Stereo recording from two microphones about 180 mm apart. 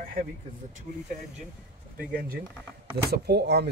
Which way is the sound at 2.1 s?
55° right (ahead or behind).